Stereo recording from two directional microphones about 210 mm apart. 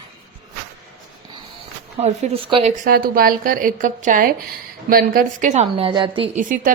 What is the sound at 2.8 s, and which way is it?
Speech, 45° right (ahead or behind).